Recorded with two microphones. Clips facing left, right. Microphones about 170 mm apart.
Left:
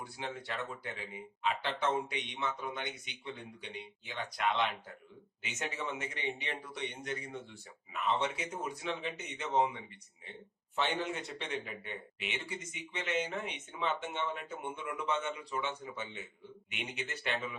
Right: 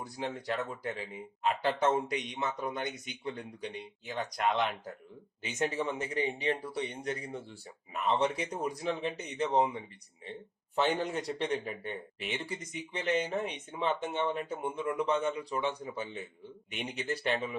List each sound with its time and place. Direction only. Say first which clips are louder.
0.0 s speech: right 5 dB; 40° right (ahead or behind)